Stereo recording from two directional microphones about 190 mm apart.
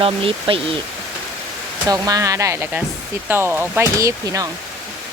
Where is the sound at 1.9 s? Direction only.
20° right (ahead or behind).